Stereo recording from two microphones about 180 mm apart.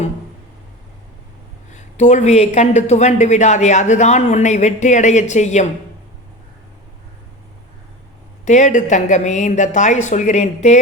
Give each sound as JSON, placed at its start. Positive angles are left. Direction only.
{"t": 1.7, "sound": "a woman's voice", "side_deg": 40}
{"t": 8.4, "sound": "a woman's voice", "side_deg": 45}